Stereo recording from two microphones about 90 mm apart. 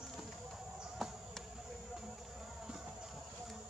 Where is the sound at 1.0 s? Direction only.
Centre (ahead or behind).